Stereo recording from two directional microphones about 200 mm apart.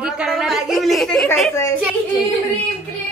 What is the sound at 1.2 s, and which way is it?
Speech, 10° left (ahead or behind).